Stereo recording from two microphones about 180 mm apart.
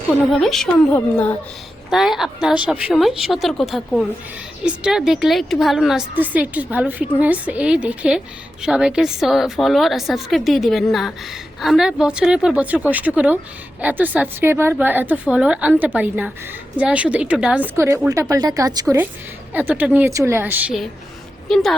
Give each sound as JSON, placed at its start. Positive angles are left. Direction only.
{"t": 0.1, "sound": "a woman's voice", "side_deg": 0}
{"t": 1.9, "sound": "a woman's voice", "side_deg": 0}
{"t": 19.5, "sound": "a woman's voice", "side_deg": -10}
{"t": 21.5, "sound": "a woman's voice", "side_deg": 0}